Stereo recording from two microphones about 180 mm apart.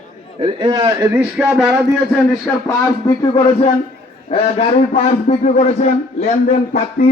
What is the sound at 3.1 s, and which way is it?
Speech, 15° left (ahead or behind).